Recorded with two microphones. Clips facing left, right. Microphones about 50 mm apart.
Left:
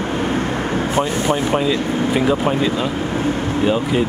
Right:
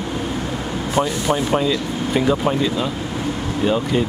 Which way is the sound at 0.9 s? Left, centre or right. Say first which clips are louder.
Right 1 dB; left.